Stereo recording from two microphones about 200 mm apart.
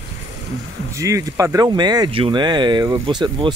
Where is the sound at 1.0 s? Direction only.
15° right (ahead or behind).